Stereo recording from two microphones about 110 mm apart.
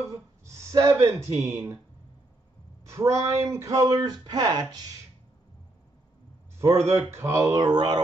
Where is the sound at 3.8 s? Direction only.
40° right (ahead or behind).